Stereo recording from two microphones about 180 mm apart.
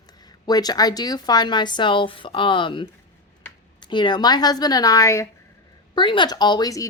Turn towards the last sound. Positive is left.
turn(degrees=20)  # may be behind; listen again after turning